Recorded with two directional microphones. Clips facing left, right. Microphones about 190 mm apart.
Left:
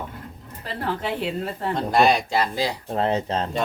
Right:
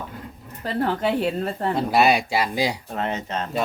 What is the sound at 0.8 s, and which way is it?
Speech, 45° right (ahead or behind).